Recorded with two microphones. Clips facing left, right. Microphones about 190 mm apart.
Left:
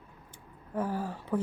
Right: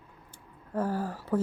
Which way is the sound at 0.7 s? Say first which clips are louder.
Right 2 dB; 15° left (ahead or behind).